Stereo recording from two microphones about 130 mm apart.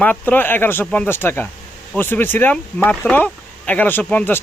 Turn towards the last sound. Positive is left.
turn(degrees=15)  # may be behind; listen again after turning